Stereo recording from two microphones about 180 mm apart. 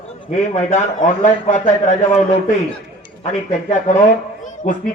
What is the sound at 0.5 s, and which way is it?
A man's voice, 40° left (ahead or behind).